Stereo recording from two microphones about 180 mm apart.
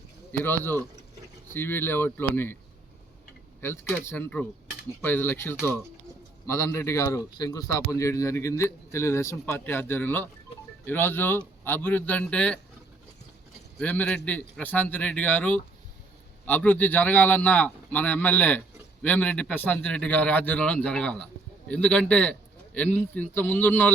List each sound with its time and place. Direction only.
0.3 s a man's voice: 10° left (ahead or behind)
4.0 s a man's voice: 15° left (ahead or behind)
13.7 s a man's voice: 5° left (ahead or behind)